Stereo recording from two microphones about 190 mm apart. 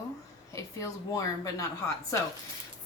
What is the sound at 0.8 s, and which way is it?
A woman's voice, 20° left (ahead or behind).